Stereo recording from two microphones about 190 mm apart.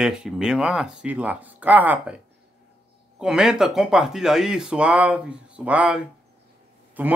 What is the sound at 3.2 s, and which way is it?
A man's voice, 5° right (ahead or behind).